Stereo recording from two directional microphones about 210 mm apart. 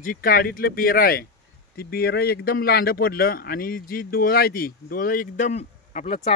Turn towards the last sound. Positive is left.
turn(degrees=30)  # may be behind; listen again after turning